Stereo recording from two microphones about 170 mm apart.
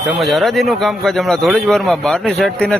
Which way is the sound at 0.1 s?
Centre (ahead or behind).